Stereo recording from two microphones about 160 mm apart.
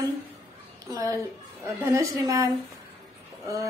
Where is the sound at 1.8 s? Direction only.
20° right (ahead or behind).